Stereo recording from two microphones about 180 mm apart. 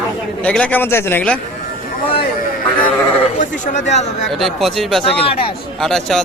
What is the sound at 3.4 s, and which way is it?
Speech, 45° left (ahead or behind).